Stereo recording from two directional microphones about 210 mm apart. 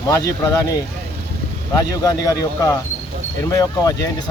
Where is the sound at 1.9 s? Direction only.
15° left (ahead or behind).